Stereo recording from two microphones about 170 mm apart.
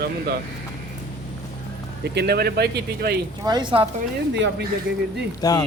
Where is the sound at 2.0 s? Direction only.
75° right (ahead or behind).